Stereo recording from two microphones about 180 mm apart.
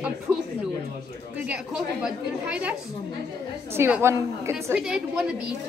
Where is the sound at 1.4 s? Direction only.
5° right (ahead or behind).